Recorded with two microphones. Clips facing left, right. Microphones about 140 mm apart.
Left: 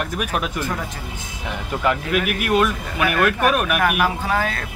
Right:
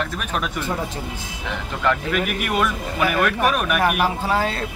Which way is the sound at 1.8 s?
10° left (ahead or behind).